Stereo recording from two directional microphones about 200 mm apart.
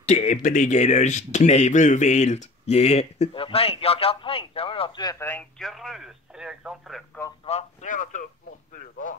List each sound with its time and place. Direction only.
0.0 s speech: 35° left (ahead or behind); by 7.1 s centre (ahead or behind)
7.4 s speech: 35° left (ahead or behind)
8.7 s a sound: 40° left (ahead or behind)